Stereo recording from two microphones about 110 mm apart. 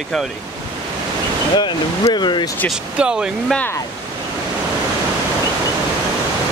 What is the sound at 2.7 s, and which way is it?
Speech, 5° right (ahead or behind).